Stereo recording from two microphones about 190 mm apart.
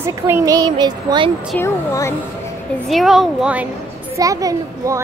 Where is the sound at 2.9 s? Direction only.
Centre (ahead or behind).